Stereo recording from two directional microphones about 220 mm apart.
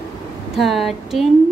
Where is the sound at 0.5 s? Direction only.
Centre (ahead or behind).